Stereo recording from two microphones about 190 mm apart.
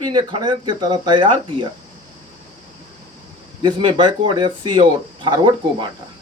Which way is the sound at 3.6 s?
25° right (ahead or behind).